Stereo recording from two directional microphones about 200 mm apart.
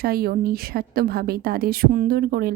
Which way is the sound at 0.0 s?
50° right (ahead or behind).